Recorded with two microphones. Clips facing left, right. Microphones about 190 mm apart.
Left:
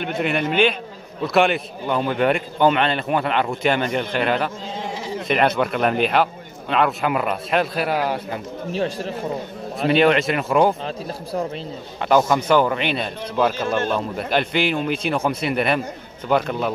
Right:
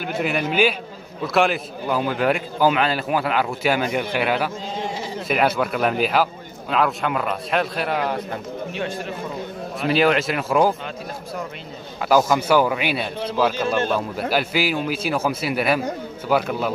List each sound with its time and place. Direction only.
0.0 s a man's voice: 5° right (ahead or behind)
8.7 s speech: 35° left (ahead or behind)
9.8 s a man's voice: centre (ahead or behind)
12.1 s a man's voice: 5° right (ahead or behind)